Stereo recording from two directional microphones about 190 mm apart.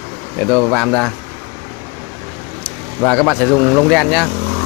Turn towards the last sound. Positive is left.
turn(degrees=0)  # may be behind; listen again after turning